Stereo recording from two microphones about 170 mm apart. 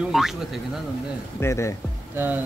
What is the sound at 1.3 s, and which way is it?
Speech, 15° left (ahead or behind).